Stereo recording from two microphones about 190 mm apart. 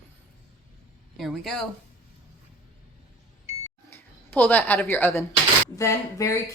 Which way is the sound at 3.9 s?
10° left (ahead or behind).